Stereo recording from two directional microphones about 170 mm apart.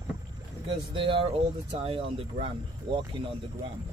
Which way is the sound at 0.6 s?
30° right (ahead or behind).